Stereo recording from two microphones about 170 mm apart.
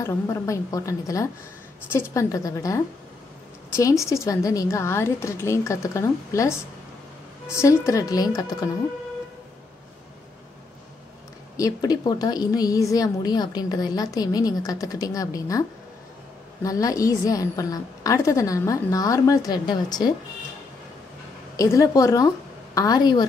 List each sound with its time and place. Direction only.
0.0 s a woman's voice: 20° left (ahead or behind)
11.5 s a woman's voice: 20° left (ahead or behind)
16.6 s a woman's voice: 20° left (ahead or behind)
21.5 s a woman's voice: 20° left (ahead or behind)